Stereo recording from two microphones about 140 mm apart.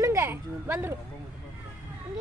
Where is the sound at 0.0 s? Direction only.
20° right (ahead or behind).